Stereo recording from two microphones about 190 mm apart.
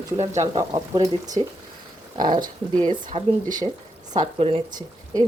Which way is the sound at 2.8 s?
25° right (ahead or behind).